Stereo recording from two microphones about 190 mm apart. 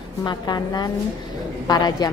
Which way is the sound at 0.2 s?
20° left (ahead or behind).